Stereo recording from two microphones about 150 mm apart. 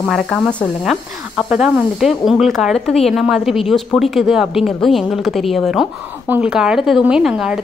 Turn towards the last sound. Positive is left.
turn(degrees=-5)  # may be behind; listen again after turning